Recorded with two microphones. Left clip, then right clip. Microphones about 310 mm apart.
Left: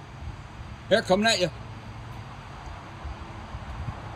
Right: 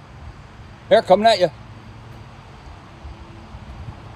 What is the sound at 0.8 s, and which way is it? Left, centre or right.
Speech, centre.